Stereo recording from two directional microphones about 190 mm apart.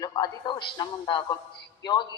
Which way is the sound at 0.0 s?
20° left (ahead or behind).